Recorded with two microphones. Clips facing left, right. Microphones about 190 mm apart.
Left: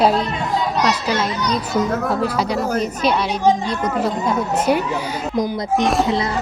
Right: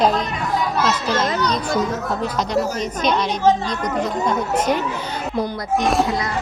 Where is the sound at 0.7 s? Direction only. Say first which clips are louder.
Left 1 dB; 10° left (ahead or behind).